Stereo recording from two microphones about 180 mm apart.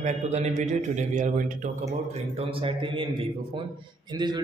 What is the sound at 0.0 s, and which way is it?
Speech, 40° right (ahead or behind).